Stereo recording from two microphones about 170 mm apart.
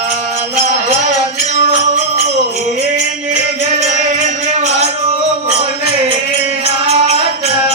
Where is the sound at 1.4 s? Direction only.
45° right (ahead or behind).